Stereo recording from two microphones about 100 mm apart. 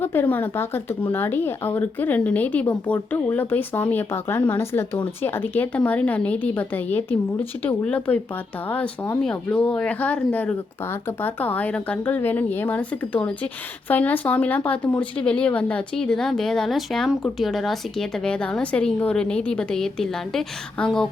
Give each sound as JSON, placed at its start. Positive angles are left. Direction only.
{"t": 0.0, "sound": "speech", "side_deg": 20}